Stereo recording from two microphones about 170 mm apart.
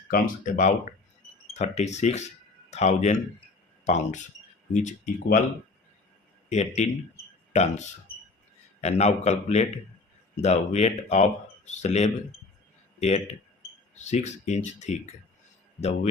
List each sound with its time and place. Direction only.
0.1 s speech: 50° left (ahead or behind)
6.5 s speech: 40° left (ahead or behind)